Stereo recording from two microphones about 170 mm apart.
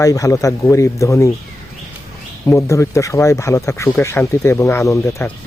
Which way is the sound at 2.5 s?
15° left (ahead or behind).